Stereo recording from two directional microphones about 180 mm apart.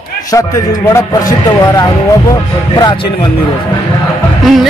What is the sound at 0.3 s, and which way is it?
A man's voice, 20° left (ahead or behind).